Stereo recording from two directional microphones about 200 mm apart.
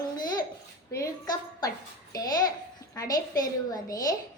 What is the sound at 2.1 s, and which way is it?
A woman's voice, 20° left (ahead or behind).